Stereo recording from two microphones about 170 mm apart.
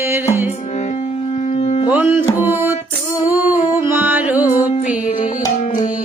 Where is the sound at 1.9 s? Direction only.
10° right (ahead or behind).